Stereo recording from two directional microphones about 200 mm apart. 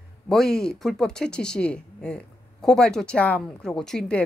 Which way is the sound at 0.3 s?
5° left (ahead or behind).